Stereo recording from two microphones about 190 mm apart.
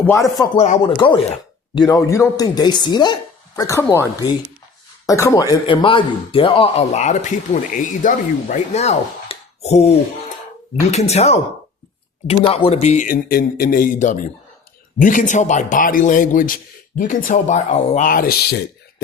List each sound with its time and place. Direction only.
0.0 s speech: 10° left (ahead or behind)
0.5 s speech: 35° left (ahead or behind); by 4.0 s 15° left (ahead or behind)
5.0 s speech: 15° left (ahead or behind); by 19.0 s 55° left (ahead or behind)